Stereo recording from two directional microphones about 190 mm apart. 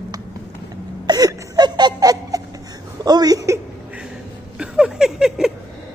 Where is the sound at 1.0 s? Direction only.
20° right (ahead or behind).